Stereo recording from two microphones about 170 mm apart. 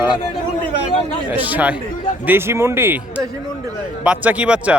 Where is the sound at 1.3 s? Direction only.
10° right (ahead or behind).